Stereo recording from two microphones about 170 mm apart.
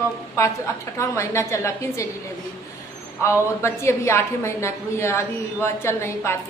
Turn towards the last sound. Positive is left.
turn(degrees=15)  # may be behind; listen again after turning